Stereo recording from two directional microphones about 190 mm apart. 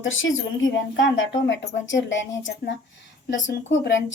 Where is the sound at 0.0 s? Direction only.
85° left.